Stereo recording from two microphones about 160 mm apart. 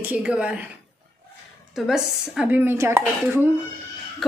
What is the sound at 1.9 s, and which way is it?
Speech, 5° right (ahead or behind).